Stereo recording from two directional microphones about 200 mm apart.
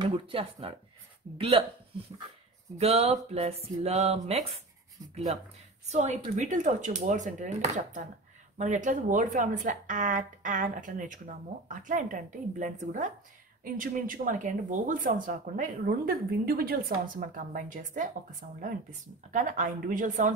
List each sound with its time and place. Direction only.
0.0 s speech: 30° right (ahead or behind)
2.8 s speech: 30° right (ahead or behind)